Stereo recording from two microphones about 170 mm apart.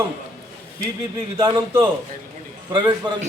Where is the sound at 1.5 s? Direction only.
30° right (ahead or behind).